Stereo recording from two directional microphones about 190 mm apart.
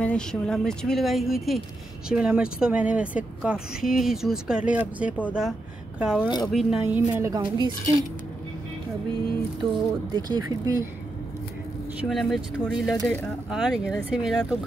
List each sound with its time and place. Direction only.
0.0 s speech: 5° left (ahead or behind)
6.2 s speech: 20° left (ahead or behind)
6.5 s speech: centre (ahead or behind)
6.9 s a woman's voice: 15° right (ahead or behind)
10.1 s speech: 20° right (ahead or behind)
12.0 s speech: centre (ahead or behind)